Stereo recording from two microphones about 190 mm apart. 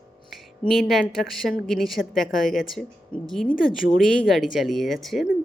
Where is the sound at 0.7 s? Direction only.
Centre (ahead or behind).